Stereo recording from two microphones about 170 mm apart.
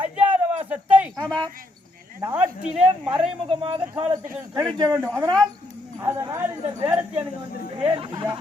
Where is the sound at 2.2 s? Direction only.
10° right (ahead or behind).